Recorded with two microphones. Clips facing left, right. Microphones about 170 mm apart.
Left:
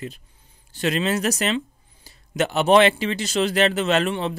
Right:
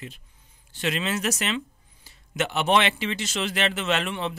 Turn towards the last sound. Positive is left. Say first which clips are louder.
# left 5 dB
turn(degrees=35)  # may be behind; listen again after turning